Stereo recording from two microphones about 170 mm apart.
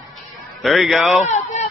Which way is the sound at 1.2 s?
45° left (ahead or behind).